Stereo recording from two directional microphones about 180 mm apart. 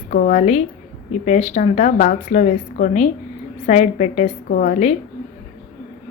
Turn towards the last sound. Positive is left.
turn(degrees=45)  # may be behind; listen again after turning